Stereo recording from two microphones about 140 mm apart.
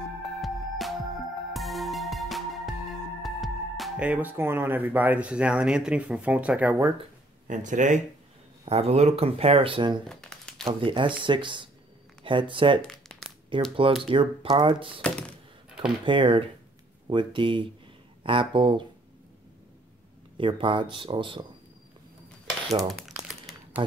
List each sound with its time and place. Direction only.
0.4 s music: centre (ahead or behind)
3.2 s speech: centre (ahead or behind)
7.4 s speech: 65° right (ahead or behind)
8.6 s speech: 45° right (ahead or behind)
10.0 s a sound: 5° left (ahead or behind)
10.6 s speech: 40° right (ahead or behind)
12.8 s crumpling: centre (ahead or behind)
13.5 s speech: 40° right (ahead or behind)
15.0 s thunk: 10° left (ahead or behind)
16.1 s speech: 35° right (ahead or behind)
20.3 s speech: 35° right (ahead or behind)